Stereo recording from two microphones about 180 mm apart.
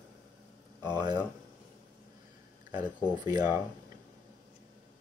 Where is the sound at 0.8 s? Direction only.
25° right (ahead or behind).